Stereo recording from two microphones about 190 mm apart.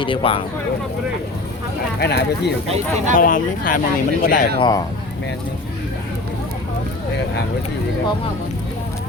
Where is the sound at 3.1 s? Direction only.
45° left (ahead or behind).